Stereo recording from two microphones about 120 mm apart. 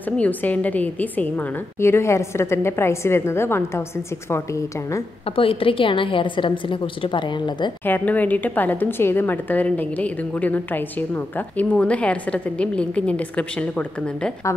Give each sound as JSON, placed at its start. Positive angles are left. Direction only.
{"t": 0.2, "sound": "a woman's voice", "side_deg": 15}
{"t": 5.2, "sound": "a woman's voice", "side_deg": 50}
{"t": 7.8, "sound": "a woman's voice", "side_deg": 15}